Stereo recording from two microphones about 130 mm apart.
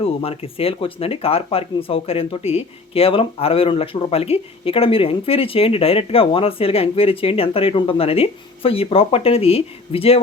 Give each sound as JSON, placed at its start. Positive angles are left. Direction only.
{"t": 0.0, "sound": "speech", "side_deg": 50}